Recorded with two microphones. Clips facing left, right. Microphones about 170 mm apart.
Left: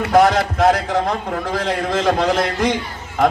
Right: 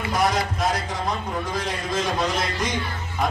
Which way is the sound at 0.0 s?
70° left (ahead or behind).